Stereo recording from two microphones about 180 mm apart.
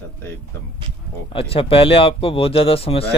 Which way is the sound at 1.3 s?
30° left (ahead or behind).